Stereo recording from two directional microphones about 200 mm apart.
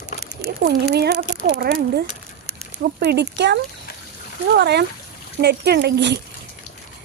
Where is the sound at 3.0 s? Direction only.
55° right (ahead or behind).